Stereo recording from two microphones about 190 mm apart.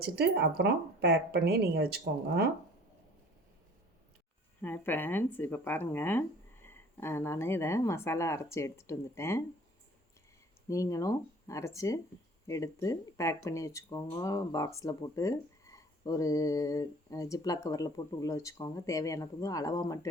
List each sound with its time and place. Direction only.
0.0 s speech: 55° right (ahead or behind)
4.6 s speech: 10° left (ahead or behind)
10.7 s speech: 15° left (ahead or behind)